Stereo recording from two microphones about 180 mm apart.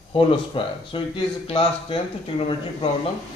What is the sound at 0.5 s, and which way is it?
Speech, 30° left (ahead or behind).